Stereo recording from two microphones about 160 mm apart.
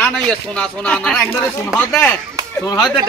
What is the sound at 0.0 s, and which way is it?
A man's voice, 5° left (ahead or behind).